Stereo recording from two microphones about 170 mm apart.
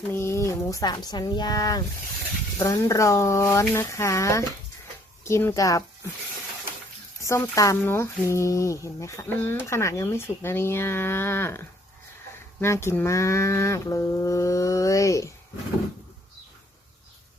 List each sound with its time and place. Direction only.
0.1 s speech: 15° left (ahead or behind)
7.2 s speech: 20° left (ahead or behind)